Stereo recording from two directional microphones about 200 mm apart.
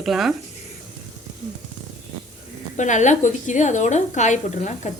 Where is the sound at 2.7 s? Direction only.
35° left (ahead or behind).